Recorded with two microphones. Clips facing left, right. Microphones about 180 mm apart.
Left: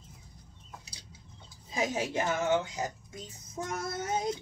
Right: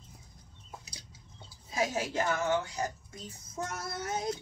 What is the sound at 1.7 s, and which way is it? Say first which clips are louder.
Speech: left 1 dB; 20° left (ahead or behind).